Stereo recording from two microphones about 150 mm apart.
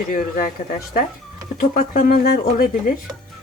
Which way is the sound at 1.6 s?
70° left (ahead or behind).